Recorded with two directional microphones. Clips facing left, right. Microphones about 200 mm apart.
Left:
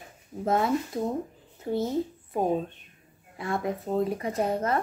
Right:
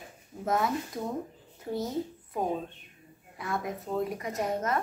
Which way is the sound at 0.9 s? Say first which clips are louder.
Left 5 dB; 30° left (ahead or behind).